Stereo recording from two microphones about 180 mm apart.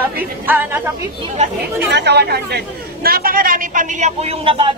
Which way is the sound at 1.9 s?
70° right (ahead or behind).